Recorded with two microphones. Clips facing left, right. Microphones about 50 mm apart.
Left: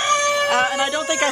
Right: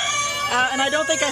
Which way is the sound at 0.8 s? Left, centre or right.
Centre.